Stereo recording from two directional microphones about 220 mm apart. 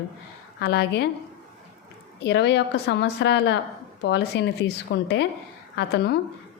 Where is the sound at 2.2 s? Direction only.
50° left (ahead or behind).